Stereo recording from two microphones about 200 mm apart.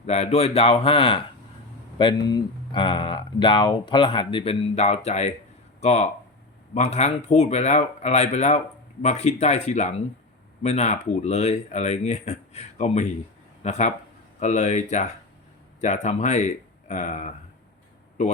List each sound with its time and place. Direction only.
0.0 s a man's voice: 30° left (ahead or behind)